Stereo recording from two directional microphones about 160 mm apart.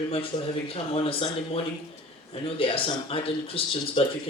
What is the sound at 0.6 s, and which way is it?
Speech, 35° left (ahead or behind).